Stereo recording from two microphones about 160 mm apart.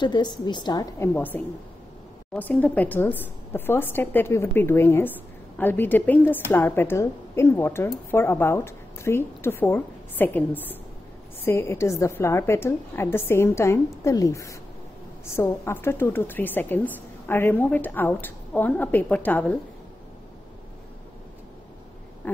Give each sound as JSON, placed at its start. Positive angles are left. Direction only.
{"t": 0.0, "sound": "a woman's voice", "side_deg": 30}
{"t": 22.2, "sound": "owl", "side_deg": 10}